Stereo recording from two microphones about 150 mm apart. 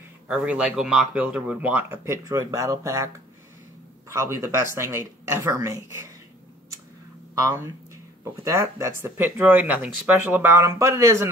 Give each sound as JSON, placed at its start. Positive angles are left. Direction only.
{"t": 0.3, "sound": "speech", "side_deg": -5}
{"t": 4.1, "sound": "speech", "side_deg": -20}
{"t": 7.3, "sound": "speech", "side_deg": -20}